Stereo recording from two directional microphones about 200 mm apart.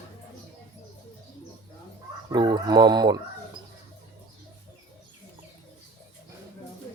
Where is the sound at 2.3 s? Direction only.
20° right (ahead or behind).